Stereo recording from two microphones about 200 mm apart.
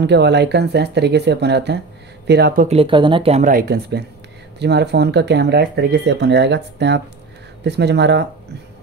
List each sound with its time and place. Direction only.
0.0 s speech: 60° right (ahead or behind); by 2.8 s 40° right (ahead or behind)
2.8 s speech: 25° right (ahead or behind); by 8.3 s 60° right (ahead or behind)